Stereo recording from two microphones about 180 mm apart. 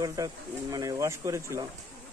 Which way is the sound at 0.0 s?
20° right (ahead or behind).